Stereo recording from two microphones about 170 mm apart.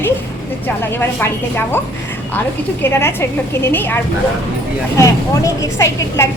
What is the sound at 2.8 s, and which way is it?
A woman's voice, 15° left (ahead or behind).